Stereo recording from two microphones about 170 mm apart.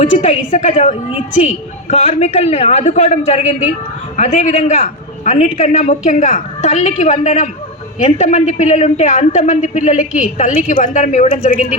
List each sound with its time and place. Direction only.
0.0 s a man's voice: 35° left (ahead or behind)